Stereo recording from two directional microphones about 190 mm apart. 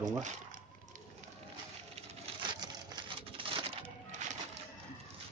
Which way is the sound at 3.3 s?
30° right (ahead or behind).